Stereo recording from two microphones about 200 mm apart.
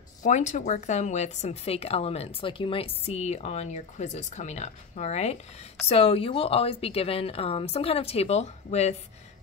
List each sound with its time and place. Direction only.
0.2 s a woman's voice: 40° left (ahead or behind)